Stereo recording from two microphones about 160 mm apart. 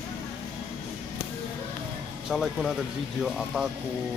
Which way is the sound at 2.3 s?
Centre (ahead or behind).